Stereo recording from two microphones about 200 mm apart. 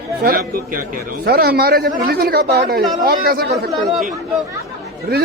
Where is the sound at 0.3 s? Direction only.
45° right (ahead or behind).